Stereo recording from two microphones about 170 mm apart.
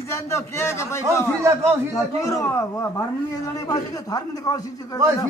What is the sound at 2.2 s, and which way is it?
Speech, 20° left (ahead or behind).